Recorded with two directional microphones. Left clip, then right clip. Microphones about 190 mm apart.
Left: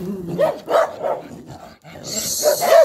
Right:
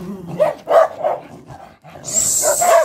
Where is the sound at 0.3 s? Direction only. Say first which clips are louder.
Right 3 dB; 30° right (ahead or behind).